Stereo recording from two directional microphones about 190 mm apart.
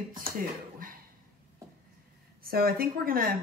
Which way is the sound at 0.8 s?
45° right (ahead or behind).